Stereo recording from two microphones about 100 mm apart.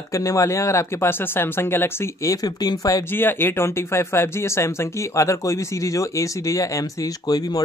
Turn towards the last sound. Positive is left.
turn(degrees=35)  # may be behind; listen again after turning